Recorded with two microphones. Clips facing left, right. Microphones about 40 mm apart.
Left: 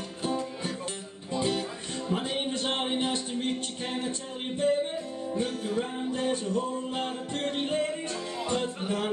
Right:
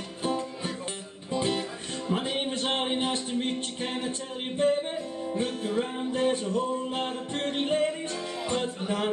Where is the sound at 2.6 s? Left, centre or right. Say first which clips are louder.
Right 2 dB; centre.